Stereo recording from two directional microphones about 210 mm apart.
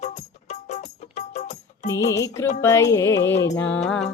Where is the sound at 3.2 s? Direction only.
55° left (ahead or behind).